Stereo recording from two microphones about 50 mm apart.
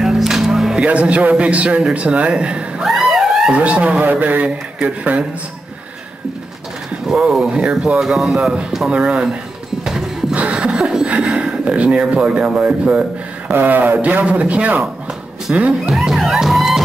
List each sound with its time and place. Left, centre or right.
0.0 s music: centre
0.8 s speech: right
2.8 s a sound: centre
3.5 s speech: right
7.1 s speech: centre
7.4 s speech: right
8.0 s speech: centre
8.9 s speech: centre
10.3 s chuckle: right
11.3 s speech: right
13.5 s speech: right
15.9 s music: centre